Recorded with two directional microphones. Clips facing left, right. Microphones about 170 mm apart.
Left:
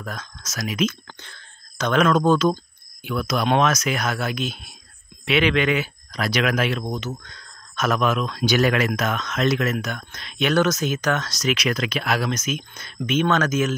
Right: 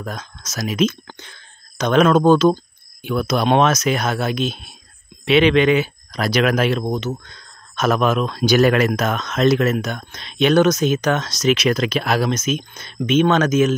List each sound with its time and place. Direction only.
0.0 s speech: 25° right (ahead or behind)
1.0 s speech: 15° right (ahead or behind)
6.1 s speech: 35° right (ahead or behind); by 13.7 s 20° right (ahead or behind)